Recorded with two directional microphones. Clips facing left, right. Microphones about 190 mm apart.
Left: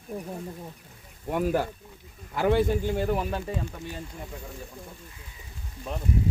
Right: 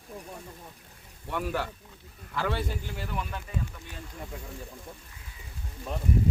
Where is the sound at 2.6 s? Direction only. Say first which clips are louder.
Left 11 dB; 50° left (ahead or behind).